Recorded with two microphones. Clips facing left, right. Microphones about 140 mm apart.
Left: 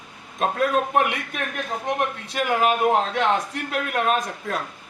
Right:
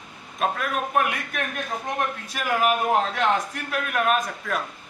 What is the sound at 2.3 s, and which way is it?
A man's voice, 25° left (ahead or behind).